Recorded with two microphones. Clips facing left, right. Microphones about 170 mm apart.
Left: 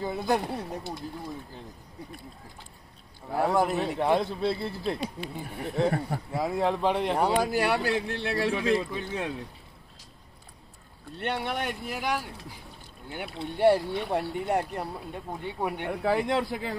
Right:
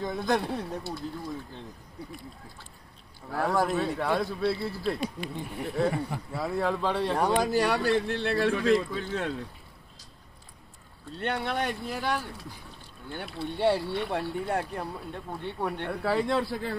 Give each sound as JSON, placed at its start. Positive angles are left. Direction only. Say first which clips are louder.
{"t": 0.0, "sound": "speech", "louder": "even", "side_deg": 10}
{"t": 3.3, "sound": "a man's voice", "louder": "left 2 dB", "side_deg": 20}
{"t": 5.2, "sound": "speech", "louder": "right 1 dB", "side_deg": 5}
{"t": 5.9, "sound": "speech", "louder": "left 1 dB", "side_deg": 45}
{"t": 6.3, "sound": "speech", "louder": "left 2 dB", "side_deg": 15}
{"t": 11.1, "sound": "speech", "louder": "right 1 dB", "side_deg": 10}